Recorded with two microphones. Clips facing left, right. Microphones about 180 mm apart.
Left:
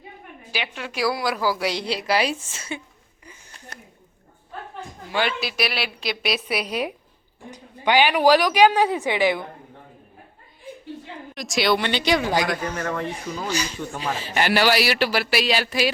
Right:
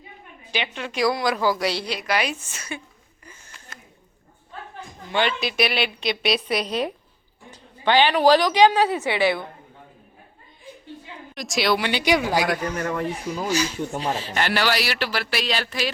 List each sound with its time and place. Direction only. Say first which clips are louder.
0.5 s a woman's voice: right 2 dB; 5° left (ahead or behind)
1.8 s a woman's voice: left 2 dB; 30° left (ahead or behind)
5.1 s a woman's voice: right 2 dB; 5° left (ahead or behind)
11.3 s a man's voice: left 1 dB; centre (ahead or behind)